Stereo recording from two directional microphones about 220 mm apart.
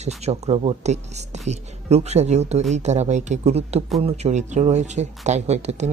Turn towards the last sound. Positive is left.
turn(degrees=-30)  # may be behind; listen again after turning